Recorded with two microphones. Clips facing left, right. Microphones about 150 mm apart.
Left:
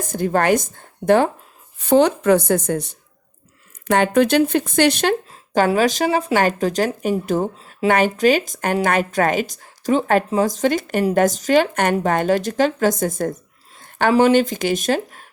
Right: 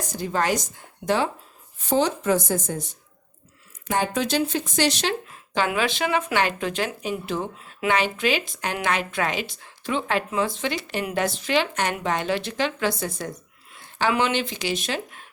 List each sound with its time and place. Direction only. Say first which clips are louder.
0.0 s a woman's voice: left 6 dB; 50° left (ahead or behind)
1.8 s speech: left 7 dB; 65° left (ahead or behind)
5.5 s a woman's voice: left 7 dB; 40° left (ahead or behind)